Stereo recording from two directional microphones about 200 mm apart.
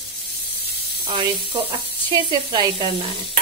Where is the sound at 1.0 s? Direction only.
25° right (ahead or behind).